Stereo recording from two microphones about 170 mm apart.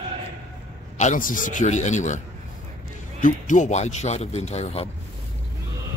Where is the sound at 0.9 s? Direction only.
45° left (ahead or behind).